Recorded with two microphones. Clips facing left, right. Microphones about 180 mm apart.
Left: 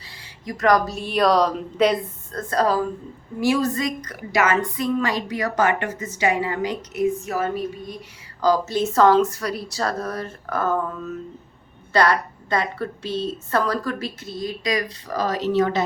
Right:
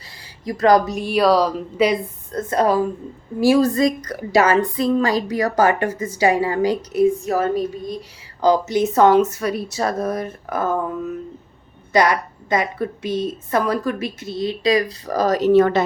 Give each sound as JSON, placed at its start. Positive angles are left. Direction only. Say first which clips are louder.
{"t": 0.4, "sound": "a woman's voice", "louder": "right 4 dB", "side_deg": -30}
{"t": 0.9, "sound": "a woman's voice", "louder": "right 3 dB", "side_deg": -15}
{"t": 2.3, "sound": "a woman's voice", "louder": "right 3 dB", "side_deg": -20}
{"t": 3.4, "sound": "a woman's voice", "louder": "right 6 dB", "side_deg": -35}
{"t": 8.4, "sound": "a woman's voice", "louder": "right 3 dB", "side_deg": -20}